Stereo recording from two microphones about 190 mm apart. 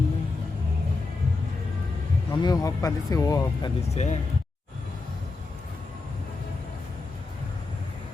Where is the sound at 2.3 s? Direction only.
20° left (ahead or behind).